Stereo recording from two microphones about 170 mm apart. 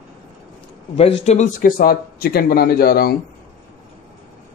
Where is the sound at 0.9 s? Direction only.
35° left (ahead or behind); by 3.2 s 65° left (ahead or behind).